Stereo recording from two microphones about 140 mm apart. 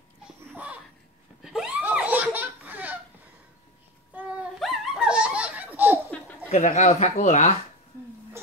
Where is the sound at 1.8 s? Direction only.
10° right (ahead or behind).